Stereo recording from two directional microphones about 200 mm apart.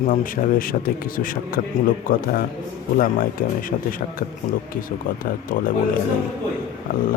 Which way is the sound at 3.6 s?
45° left (ahead or behind).